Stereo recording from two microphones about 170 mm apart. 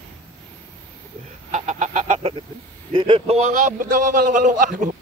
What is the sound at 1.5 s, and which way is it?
Fowl, 45° right (ahead or behind).